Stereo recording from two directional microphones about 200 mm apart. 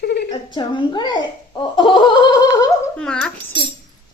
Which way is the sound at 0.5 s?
20° left (ahead or behind).